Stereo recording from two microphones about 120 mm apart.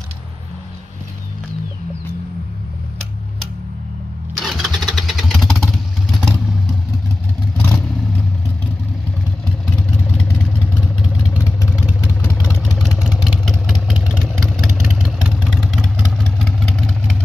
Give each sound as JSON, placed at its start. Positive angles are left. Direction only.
{"t": 4.4, "sound": "vehicle", "side_deg": 0}
{"t": 7.5, "sound": "vehicle", "side_deg": 20}
{"t": 11.7, "sound": "vehicle", "side_deg": -10}